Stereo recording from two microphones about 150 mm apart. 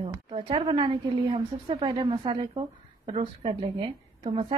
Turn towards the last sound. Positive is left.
turn(degrees=-40)  # may be behind; listen again after turning